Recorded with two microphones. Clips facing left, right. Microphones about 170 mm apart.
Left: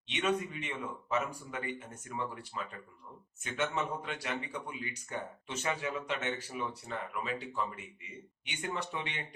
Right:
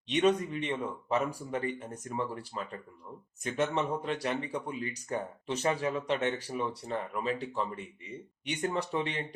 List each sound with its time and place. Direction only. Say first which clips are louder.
0.1 s speech: right 6 dB; 35° right (ahead or behind)